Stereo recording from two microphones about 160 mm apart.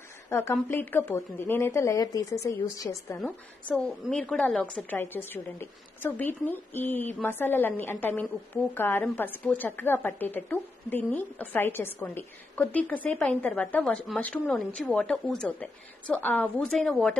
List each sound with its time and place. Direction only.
0.3 s a woman's voice: 15° left (ahead or behind)
3.2 s a woman's voice: 5° left (ahead or behind)